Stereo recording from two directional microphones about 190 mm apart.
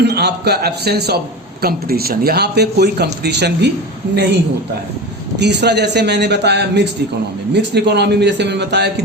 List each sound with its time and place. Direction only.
0.0 s speech: 60° right (ahead or behind)
5.4 s speech: 60° right (ahead or behind)